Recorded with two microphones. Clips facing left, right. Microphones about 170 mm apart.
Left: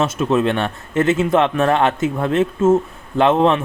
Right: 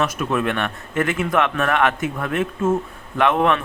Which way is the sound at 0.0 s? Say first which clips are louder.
Left 4 dB; 25° left (ahead or behind).